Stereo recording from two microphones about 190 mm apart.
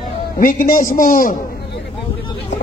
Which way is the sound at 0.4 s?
45° left (ahead or behind).